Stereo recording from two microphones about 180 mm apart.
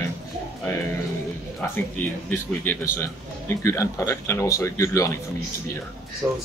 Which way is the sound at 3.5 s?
15° left (ahead or behind).